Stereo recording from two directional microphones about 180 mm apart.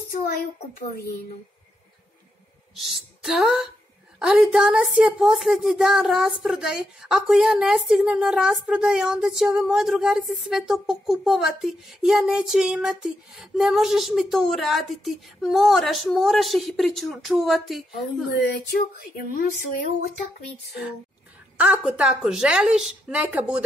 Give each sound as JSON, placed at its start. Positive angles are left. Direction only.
{"t": 2.7, "sound": "a woman's voice", "side_deg": 0}
{"t": 18.3, "sound": "speech", "side_deg": 55}
{"t": 21.5, "sound": "a woman's voice", "side_deg": -5}